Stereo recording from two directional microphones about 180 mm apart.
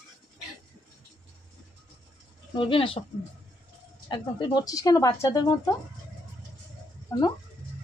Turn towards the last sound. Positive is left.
turn(degrees=15)  # may be behind; listen again after turning